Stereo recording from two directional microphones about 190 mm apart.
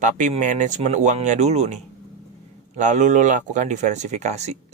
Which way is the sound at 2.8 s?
40° right (ahead or behind).